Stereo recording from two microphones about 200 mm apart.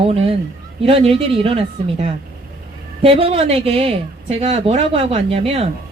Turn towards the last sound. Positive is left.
turn(degrees=-30)  # may be behind; listen again after turning